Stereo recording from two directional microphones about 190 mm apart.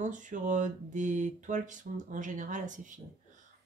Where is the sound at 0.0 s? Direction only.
40° right (ahead or behind).